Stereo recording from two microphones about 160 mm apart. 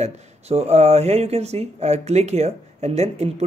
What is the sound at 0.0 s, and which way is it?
Speech, 40° right (ahead or behind).